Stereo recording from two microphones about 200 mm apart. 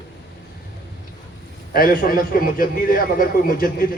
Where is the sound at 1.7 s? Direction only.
45° left (ahead or behind).